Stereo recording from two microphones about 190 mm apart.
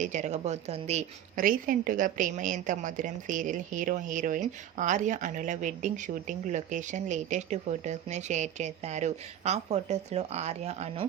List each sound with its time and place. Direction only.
0.0 s a woman's voice: 40° right (ahead or behind)